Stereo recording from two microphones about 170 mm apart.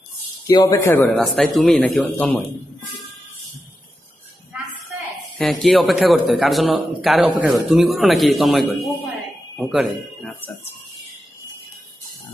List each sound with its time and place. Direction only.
0.5 s speech: 20° left (ahead or behind)
1.3 s a man's voice: centre (ahead or behind)
5.4 s a man's voice: centre (ahead or behind)